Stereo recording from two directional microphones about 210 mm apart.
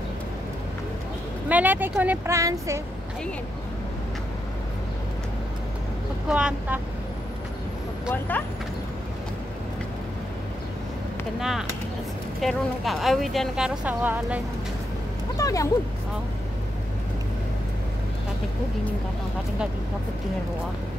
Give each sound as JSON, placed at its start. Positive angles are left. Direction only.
{"t": 1.5, "sound": "speech", "side_deg": -10}
{"t": 6.2, "sound": "speech", "side_deg": -5}
{"t": 11.3, "sound": "speech", "side_deg": 0}
{"t": 15.3, "sound": "speech", "side_deg": 15}